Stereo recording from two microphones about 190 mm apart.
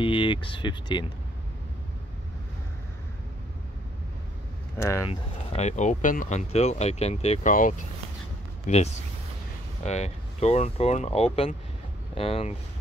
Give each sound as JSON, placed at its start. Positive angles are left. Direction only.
{"t": 0.0, "sound": "speech", "side_deg": 25}
{"t": 4.7, "sound": "speech", "side_deg": 15}
{"t": 5.5, "sound": "speech", "side_deg": 35}
{"t": 9.8, "sound": "speech", "side_deg": 35}